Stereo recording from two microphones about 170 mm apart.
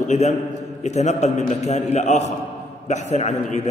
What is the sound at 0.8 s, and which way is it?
A man's voice, 40° left (ahead or behind).